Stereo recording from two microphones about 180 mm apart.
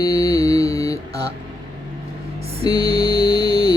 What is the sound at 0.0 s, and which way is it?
Mantra, 20° left (ahead or behind).